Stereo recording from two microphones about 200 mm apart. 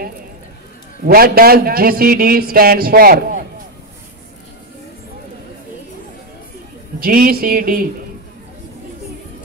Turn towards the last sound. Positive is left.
turn(degrees=-45)  # may be behind; listen again after turning